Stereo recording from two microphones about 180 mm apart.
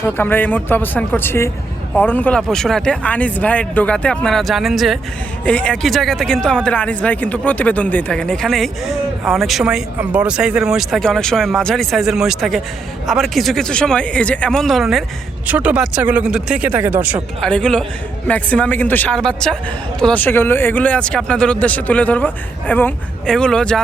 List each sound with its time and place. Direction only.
0.0 s speech: 10° left (ahead or behind); by 17.2 s 10° right (ahead or behind)
17.4 s speech: 5° left (ahead or behind)